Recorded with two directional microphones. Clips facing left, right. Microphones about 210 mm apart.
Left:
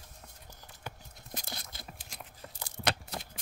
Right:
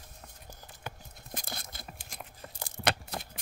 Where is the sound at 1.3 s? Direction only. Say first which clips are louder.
Right 1 dB; 50° right (ahead or behind).